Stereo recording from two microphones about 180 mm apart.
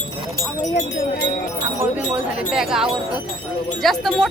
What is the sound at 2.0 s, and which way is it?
Speech, 5° right (ahead or behind).